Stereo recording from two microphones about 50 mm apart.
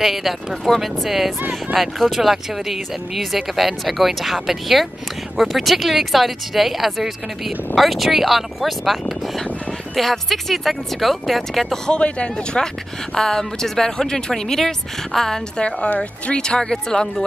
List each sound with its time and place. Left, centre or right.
0.0 s speech: centre
9.9 s speech: centre
12.0 s speech: left
13.1 s speech: centre
15.9 s speech: left